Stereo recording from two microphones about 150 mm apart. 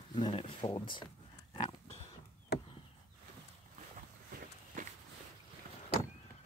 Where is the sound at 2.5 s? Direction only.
90° left.